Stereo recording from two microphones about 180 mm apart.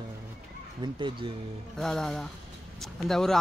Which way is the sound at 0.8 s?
25° right (ahead or behind).